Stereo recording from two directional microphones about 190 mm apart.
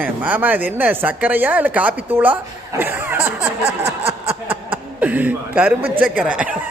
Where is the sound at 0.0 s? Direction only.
10° right (ahead or behind).